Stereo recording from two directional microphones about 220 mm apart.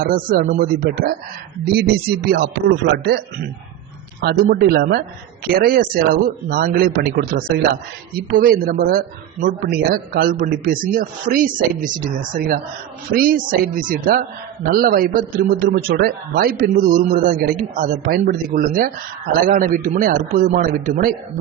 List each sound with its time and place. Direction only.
0.0 s speech: 40° right (ahead or behind)